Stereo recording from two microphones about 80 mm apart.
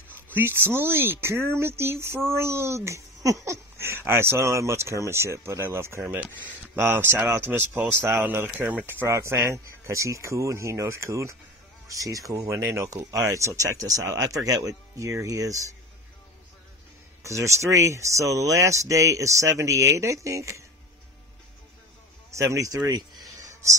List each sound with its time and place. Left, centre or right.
0.3 s speech: right
6.0 s speech: right
17.2 s speech: right
22.3 s speech: right
23.4 s a sound: right